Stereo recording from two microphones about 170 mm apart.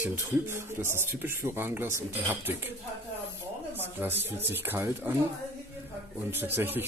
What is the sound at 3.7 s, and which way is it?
Speech, 10° right (ahead or behind).